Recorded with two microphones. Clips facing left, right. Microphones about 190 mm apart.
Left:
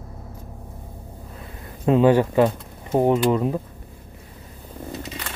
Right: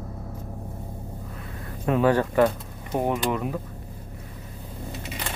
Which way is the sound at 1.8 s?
20° left (ahead or behind).